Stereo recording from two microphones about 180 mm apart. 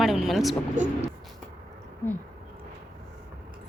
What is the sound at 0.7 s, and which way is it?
Speech, 40° right (ahead or behind).